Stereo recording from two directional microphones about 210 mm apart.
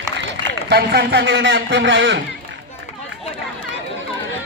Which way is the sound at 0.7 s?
50° right (ahead or behind).